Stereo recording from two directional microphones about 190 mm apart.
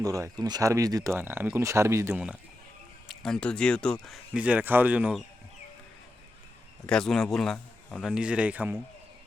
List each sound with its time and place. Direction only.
0.0 s speech: 15° right (ahead or behind)
3.1 s speech: 5° left (ahead or behind)
6.8 s speech: 5° left (ahead or behind)
8.1 s speech: 5° right (ahead or behind)